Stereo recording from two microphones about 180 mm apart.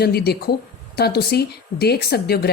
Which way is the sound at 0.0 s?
60° left (ahead or behind).